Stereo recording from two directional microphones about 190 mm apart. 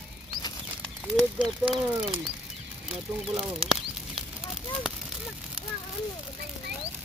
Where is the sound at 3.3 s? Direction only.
5° right (ahead or behind).